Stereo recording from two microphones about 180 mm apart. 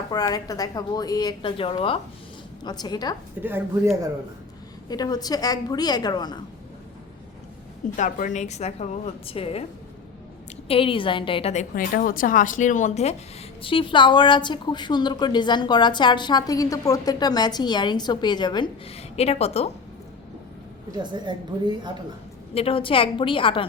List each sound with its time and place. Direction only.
0.1 s a woman's voice: 20° left (ahead or behind)
3.4 s speech: 10° right (ahead or behind)
4.9 s a woman's voice: 20° left (ahead or behind)
7.9 s a woman's voice: 45° left (ahead or behind)
10.7 s a woman's voice: 30° left (ahead or behind)
11.7 s a woman's voice: 50° left (ahead or behind); by 19.7 s 35° left (ahead or behind)
21.0 s a woman's voice: 25° right (ahead or behind)
22.5 s a woman's voice: 30° left (ahead or behind)